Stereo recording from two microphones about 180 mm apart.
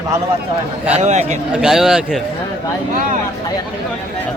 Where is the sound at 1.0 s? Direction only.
40° right (ahead or behind).